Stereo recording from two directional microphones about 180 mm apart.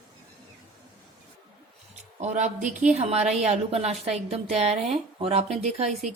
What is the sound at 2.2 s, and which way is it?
A woman's voice, 40° right (ahead or behind).